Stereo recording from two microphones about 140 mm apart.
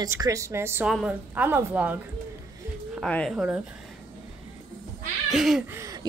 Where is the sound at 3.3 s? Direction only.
5° right (ahead or behind).